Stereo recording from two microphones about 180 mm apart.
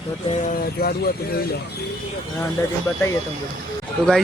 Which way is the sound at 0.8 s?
55° left (ahead or behind).